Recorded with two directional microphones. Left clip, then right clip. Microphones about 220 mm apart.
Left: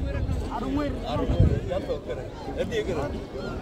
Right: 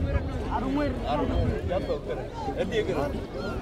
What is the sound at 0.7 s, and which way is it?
Speech, 45° left (ahead or behind).